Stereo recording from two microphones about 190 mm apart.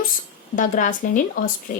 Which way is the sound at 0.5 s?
40° left (ahead or behind).